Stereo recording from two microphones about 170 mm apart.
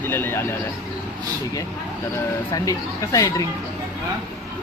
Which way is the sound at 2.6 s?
20° left (ahead or behind).